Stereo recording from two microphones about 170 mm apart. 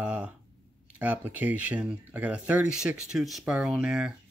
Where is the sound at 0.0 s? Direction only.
10° right (ahead or behind).